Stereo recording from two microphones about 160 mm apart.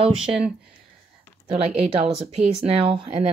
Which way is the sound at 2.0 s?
40° right (ahead or behind).